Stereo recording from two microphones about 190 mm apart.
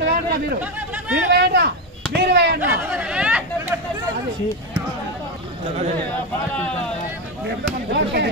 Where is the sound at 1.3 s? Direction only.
60° right (ahead or behind).